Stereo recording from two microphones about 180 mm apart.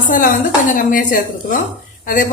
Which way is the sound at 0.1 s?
50° left (ahead or behind).